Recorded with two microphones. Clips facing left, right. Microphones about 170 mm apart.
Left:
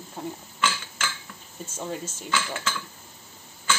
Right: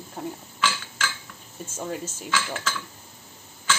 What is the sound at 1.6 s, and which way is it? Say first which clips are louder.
Speech: right 1 dB; 10° right (ahead or behind).